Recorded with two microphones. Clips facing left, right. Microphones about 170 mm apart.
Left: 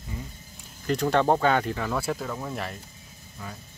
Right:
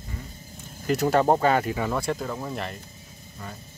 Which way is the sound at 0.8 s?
5° right (ahead or behind).